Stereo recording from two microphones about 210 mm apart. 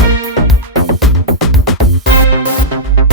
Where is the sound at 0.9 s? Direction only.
Centre (ahead or behind).